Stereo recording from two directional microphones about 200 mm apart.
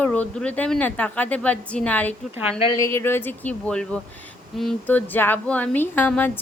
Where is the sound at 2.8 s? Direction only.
10° left (ahead or behind).